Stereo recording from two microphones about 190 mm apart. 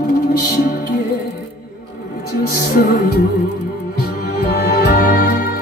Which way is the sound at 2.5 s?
50° left (ahead or behind).